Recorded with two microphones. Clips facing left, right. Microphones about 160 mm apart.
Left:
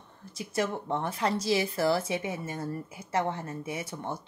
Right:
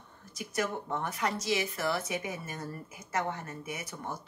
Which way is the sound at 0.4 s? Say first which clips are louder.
Left 3 dB; 25° left (ahead or behind).